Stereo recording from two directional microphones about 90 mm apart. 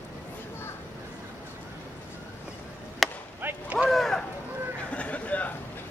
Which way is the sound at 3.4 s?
25° right (ahead or behind).